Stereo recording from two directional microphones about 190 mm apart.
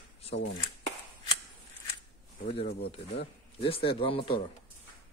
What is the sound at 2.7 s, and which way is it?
Speech, 55° left (ahead or behind).